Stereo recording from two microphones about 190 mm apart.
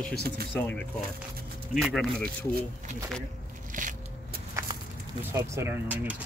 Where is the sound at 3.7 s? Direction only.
45° right (ahead or behind).